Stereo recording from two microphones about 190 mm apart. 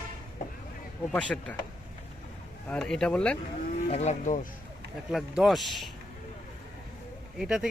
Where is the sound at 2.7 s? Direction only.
5° left (ahead or behind).